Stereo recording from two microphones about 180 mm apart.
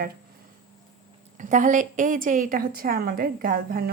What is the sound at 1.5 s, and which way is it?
A woman's voice, 45° right (ahead or behind).